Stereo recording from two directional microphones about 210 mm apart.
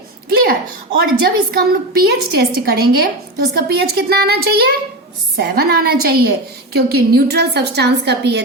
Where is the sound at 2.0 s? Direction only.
50° right (ahead or behind).